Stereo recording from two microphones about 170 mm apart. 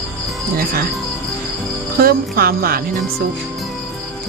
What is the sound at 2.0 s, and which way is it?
Speech, 60° right (ahead or behind).